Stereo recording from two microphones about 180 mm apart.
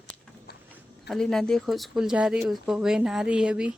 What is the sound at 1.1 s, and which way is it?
Speech, centre (ahead or behind).